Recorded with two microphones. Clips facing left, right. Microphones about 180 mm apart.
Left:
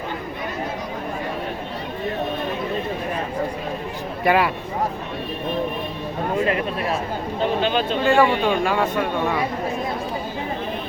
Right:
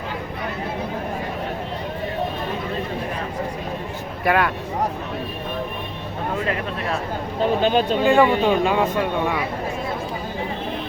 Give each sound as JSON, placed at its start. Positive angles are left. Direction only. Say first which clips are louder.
{"t": 4.2, "sound": "speech", "louder": "left 1 dB", "side_deg": 0}
{"t": 7.6, "sound": "speech", "louder": "right 3 dB", "side_deg": -45}
{"t": 8.0, "sound": "speech", "louder": "even", "side_deg": -20}